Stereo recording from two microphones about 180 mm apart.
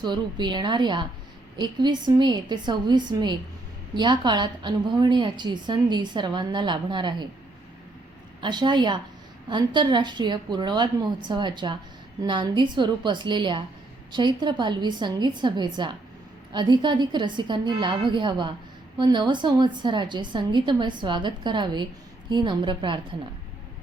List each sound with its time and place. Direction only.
0.0 s a woman's voice: 25° right (ahead or behind)
8.4 s a woman's voice: 25° right (ahead or behind)